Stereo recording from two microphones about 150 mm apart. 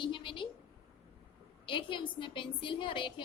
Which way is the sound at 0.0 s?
35° left (ahead or behind).